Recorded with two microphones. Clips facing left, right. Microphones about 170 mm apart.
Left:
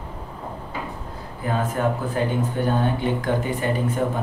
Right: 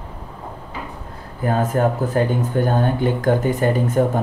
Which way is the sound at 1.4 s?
45° right (ahead or behind).